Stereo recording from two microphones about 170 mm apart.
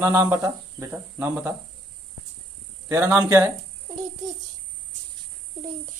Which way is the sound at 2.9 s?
15° right (ahead or behind).